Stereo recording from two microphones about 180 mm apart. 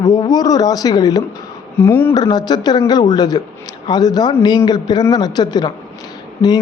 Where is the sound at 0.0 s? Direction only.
20° left (ahead or behind).